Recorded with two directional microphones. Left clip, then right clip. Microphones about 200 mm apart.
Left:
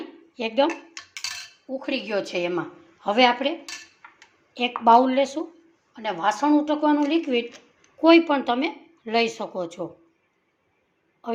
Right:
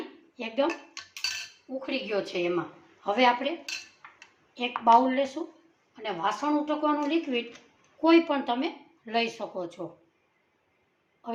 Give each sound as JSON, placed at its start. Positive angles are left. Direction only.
{"t": 0.3, "sound": "a woman's voice", "side_deg": 45}
{"t": 1.8, "sound": "a woman's voice", "side_deg": 55}
{"t": 4.8, "sound": "a woman's voice", "side_deg": 50}